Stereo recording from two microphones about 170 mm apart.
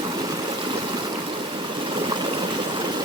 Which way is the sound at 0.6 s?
25° right (ahead or behind).